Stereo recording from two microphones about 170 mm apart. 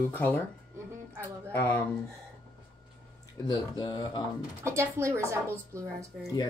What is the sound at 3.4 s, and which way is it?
Speech, 25° left (ahead or behind).